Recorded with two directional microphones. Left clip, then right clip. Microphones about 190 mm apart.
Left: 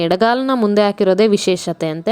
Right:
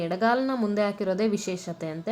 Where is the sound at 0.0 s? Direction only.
55° left (ahead or behind).